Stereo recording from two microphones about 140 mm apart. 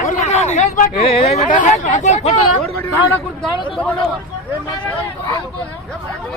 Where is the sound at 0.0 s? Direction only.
60° left (ahead or behind).